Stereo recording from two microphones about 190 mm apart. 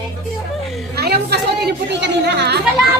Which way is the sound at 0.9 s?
55° right (ahead or behind).